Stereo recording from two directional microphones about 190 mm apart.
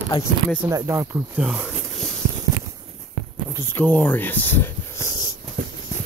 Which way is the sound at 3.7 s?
10° left (ahead or behind).